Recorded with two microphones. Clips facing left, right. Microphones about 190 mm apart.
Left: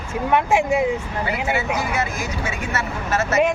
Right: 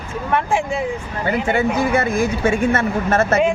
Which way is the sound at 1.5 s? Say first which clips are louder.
Right 6 dB; 55° right (ahead or behind).